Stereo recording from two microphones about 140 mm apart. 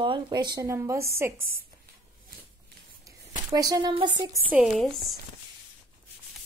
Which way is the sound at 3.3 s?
30° right (ahead or behind).